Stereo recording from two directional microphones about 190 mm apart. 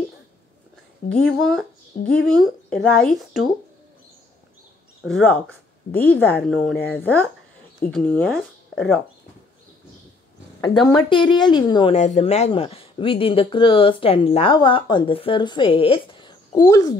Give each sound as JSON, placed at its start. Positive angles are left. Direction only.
{"t": 1.1, "sound": "speech", "side_deg": 0}
{"t": 5.0, "sound": "speech", "side_deg": 5}
{"t": 10.6, "sound": "a woman's voice", "side_deg": 5}
{"t": 10.9, "sound": "speech", "side_deg": 25}